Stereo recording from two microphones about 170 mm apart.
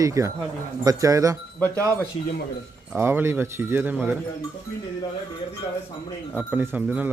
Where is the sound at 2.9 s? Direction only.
15° right (ahead or behind).